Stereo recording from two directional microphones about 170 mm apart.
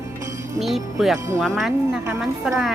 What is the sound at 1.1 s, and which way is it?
Speech, 15° right (ahead or behind).